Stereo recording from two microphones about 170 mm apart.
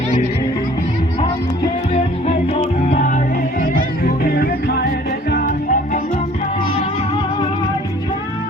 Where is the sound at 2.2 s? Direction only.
35° left (ahead or behind).